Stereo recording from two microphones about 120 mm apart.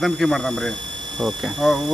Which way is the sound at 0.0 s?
Centre (ahead or behind).